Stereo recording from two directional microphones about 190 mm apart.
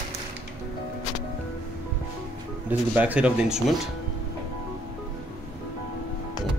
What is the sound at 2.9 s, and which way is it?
Speech, 10° right (ahead or behind).